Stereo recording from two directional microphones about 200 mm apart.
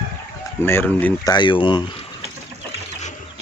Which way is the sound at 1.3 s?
25° left (ahead or behind).